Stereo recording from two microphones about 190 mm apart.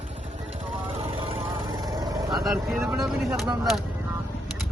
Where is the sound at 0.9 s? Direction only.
30° right (ahead or behind).